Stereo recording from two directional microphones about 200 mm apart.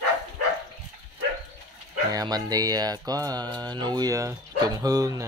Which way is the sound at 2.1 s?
20° right (ahead or behind).